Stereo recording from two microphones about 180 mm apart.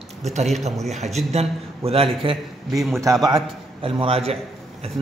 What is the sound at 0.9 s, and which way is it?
A man's voice, 40° right (ahead or behind).